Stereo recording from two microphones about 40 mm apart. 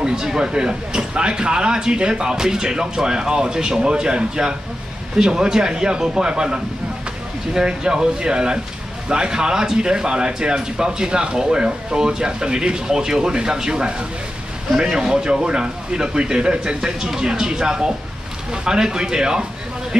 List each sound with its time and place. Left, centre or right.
0.0 s speech: centre